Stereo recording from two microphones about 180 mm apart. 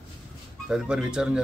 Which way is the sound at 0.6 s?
5° right (ahead or behind).